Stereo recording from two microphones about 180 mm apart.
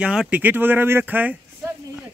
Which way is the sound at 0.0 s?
5° right (ahead or behind).